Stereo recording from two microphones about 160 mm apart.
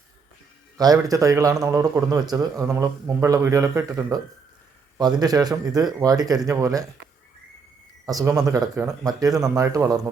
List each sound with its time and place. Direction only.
0.8 s a man's voice: 20° right (ahead or behind)
8.0 s a man's voice: 20° right (ahead or behind)